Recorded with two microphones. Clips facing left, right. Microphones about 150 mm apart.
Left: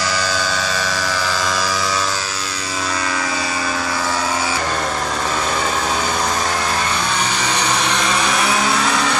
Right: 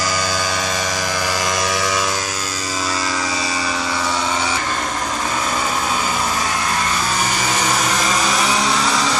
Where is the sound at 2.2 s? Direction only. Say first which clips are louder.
Right 1 dB; 45° right (ahead or behind).